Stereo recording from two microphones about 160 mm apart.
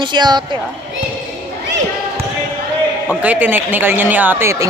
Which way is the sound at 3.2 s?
10° right (ahead or behind).